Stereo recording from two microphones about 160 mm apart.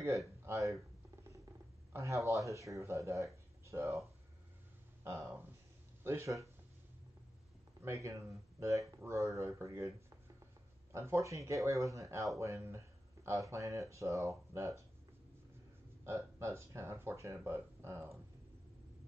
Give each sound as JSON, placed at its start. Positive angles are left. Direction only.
{"t": 0.5, "sound": "speech", "side_deg": -20}
{"t": 1.9, "sound": "speech", "side_deg": -20}
{"t": 5.0, "sound": "speech", "side_deg": -15}
{"t": 7.8, "sound": "speech", "side_deg": -20}
{"t": 16.0, "sound": "speech", "side_deg": -15}